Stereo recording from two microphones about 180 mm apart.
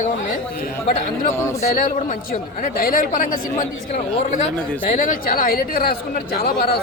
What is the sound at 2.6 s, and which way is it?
Speech, 50° left (ahead or behind).